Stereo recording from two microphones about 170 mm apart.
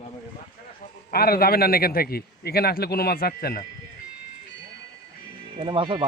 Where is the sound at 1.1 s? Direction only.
65° left (ahead or behind).